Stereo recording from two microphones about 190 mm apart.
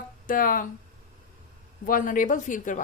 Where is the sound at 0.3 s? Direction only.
45° left (ahead or behind).